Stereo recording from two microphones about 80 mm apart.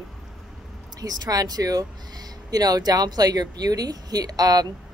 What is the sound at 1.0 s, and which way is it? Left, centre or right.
Speech, right.